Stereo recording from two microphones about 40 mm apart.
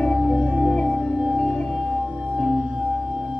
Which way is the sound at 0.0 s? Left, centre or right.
Centre.